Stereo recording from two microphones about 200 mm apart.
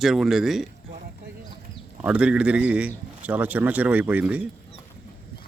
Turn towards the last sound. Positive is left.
turn(degrees=-5)  # may be behind; listen again after turning